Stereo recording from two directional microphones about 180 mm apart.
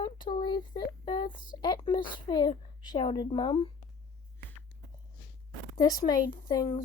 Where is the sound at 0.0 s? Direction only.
25° left (ahead or behind).